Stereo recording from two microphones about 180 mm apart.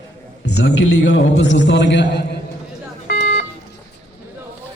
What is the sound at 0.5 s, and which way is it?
A man's voice, 80° left.